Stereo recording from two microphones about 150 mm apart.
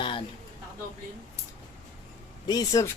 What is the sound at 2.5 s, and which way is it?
Speech, 25° left (ahead or behind).